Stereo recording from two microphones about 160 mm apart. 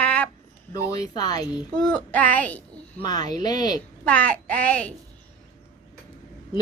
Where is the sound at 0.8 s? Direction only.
25° left (ahead or behind).